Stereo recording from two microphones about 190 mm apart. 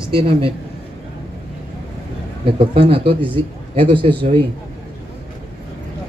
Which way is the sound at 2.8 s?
30° right (ahead or behind).